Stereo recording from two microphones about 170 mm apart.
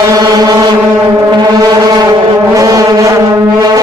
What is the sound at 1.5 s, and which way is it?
Foghorn, 20° right (ahead or behind).